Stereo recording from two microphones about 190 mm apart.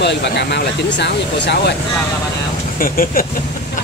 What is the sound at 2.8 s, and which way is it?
Speech, 50° left (ahead or behind).